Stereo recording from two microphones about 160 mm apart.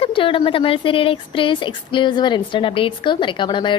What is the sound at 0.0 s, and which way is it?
Speech, 35° left (ahead or behind).